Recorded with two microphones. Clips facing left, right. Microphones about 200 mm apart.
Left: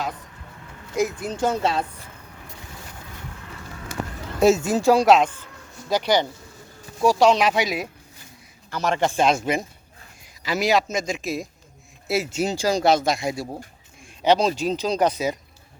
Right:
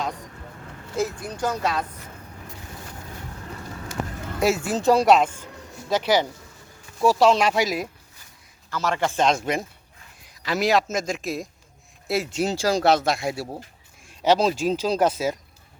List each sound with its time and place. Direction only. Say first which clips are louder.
0.9 s speech: left 3 dB; 20° left (ahead or behind)
4.4 s speech: left 5 dB; 25° left (ahead or behind)
4.9 s speech: left 1 dB; centre (ahead or behind)
8.7 s speech: left 2 dB; 20° left (ahead or behind); by 15.4 s 5° right (ahead or behind)